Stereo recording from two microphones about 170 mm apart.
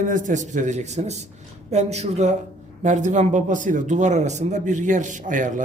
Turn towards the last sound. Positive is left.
turn(degrees=-50)  # may be behind; listen again after turning